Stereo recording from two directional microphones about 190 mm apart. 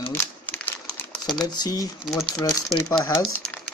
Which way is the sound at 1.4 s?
20° left (ahead or behind).